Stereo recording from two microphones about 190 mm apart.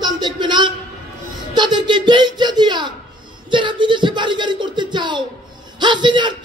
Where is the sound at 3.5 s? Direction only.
25° right (ahead or behind).